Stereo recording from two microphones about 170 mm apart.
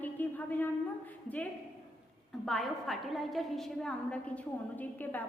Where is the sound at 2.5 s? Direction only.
Centre (ahead or behind).